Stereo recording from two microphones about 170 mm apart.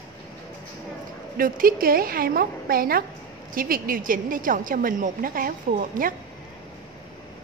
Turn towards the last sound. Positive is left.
turn(degrees=-55)  # may be behind; listen again after turning